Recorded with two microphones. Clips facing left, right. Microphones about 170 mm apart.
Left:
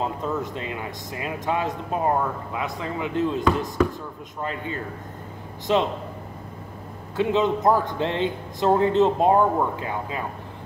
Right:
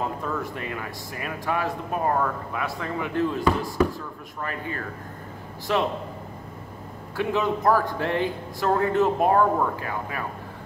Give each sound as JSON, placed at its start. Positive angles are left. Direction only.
{"t": 0.0, "sound": "a man's voice", "side_deg": 20}
{"t": 7.2, "sound": "a man's voice", "side_deg": 20}